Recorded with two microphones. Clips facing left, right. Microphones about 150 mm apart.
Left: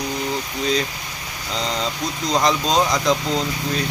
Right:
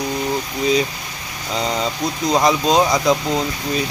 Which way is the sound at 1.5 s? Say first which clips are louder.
Right 3 dB; 10° right (ahead or behind).